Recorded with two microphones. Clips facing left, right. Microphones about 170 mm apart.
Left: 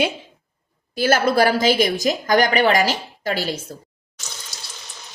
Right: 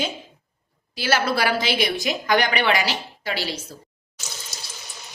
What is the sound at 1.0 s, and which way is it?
A woman's voice, 45° left (ahead or behind).